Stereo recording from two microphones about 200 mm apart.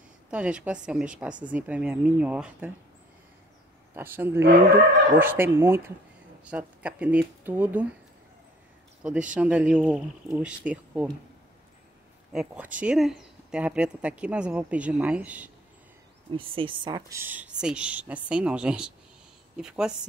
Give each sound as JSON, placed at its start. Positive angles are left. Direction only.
{"t": 0.3, "sound": "a woman's voice", "side_deg": -5}
{"t": 3.9, "sound": "a woman's voice", "side_deg": -10}
{"t": 9.0, "sound": "a woman's voice", "side_deg": -5}
{"t": 12.3, "sound": "speech", "side_deg": -5}
{"t": 16.3, "sound": "a woman's voice", "side_deg": -25}